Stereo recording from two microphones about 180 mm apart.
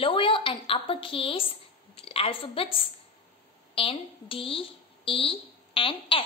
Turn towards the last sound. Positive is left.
turn(degrees=30)  # may be behind; listen again after turning